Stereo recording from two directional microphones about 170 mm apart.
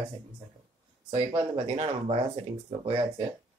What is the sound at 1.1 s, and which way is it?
Speech, 35° right (ahead or behind).